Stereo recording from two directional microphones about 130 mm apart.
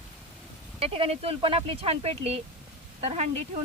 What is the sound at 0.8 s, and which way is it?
Speech, 50° right (ahead or behind).